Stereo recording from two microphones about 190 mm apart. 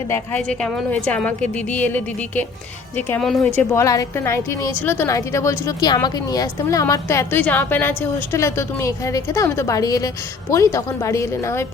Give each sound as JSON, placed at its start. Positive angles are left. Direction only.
{"t": 0.1, "sound": "a woman's voice", "side_deg": 5}